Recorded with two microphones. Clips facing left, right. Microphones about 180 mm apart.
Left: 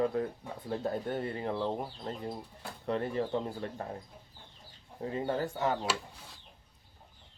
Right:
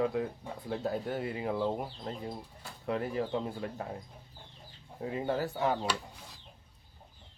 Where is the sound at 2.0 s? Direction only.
5° left (ahead or behind).